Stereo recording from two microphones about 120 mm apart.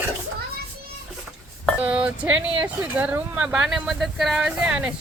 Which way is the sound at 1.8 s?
10° right (ahead or behind).